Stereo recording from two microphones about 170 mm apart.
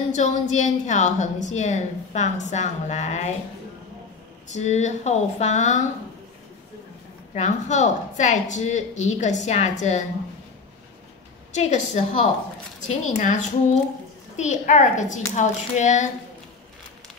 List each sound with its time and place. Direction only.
0.1 s a woman's voice: 45° left (ahead or behind)
4.5 s a woman's voice: 40° left (ahead or behind)
7.3 s a woman's voice: 45° left (ahead or behind)
11.5 s a woman's voice: 45° left (ahead or behind)